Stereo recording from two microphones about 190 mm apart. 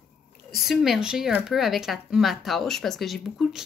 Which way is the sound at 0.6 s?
Centre (ahead or behind).